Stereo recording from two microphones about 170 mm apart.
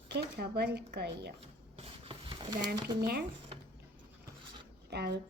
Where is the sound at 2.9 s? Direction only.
70° right (ahead or behind).